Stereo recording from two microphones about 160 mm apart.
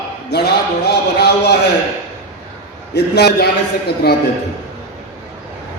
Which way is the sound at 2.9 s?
90° left.